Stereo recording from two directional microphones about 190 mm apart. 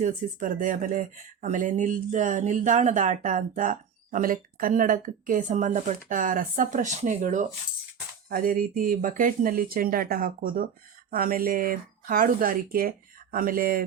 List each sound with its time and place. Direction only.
0.0 s speech: 45° right (ahead or behind)